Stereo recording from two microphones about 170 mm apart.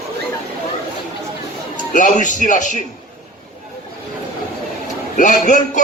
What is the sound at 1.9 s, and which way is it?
Speech, 50° left (ahead or behind).